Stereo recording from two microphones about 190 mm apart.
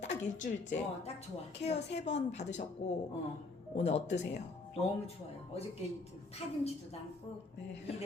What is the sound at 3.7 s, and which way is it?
Speech, 35° left (ahead or behind).